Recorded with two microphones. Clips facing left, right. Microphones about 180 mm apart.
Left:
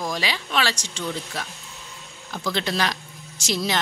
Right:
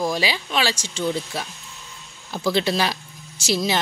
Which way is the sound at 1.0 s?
30° right (ahead or behind).